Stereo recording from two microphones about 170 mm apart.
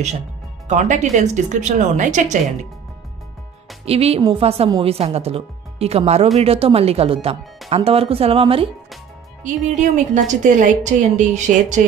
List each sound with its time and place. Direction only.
0.7 s a woman's voice: 45° right (ahead or behind)
3.8 s speech: 35° right (ahead or behind)
9.4 s a woman's voice: 45° right (ahead or behind)